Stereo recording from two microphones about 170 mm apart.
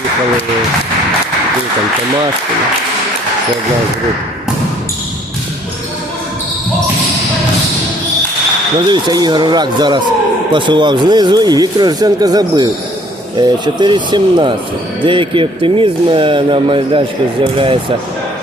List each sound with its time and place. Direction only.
8.9 s speech: 25° right (ahead or behind)